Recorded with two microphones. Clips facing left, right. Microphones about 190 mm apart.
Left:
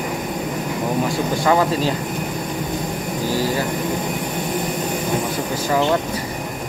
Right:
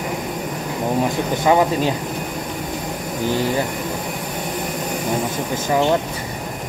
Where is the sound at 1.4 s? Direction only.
15° right (ahead or behind).